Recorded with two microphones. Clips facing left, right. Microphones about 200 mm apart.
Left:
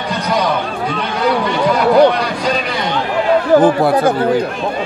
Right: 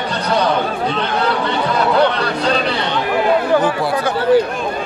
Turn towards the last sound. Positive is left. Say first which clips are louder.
# left 5 dB
turn(degrees=45)  # may be behind; listen again after turning